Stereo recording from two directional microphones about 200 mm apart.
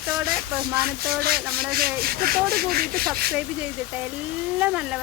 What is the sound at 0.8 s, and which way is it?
Speech, 50° right (ahead or behind).